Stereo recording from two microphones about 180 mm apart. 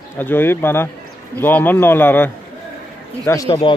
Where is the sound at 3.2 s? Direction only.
20° left (ahead or behind).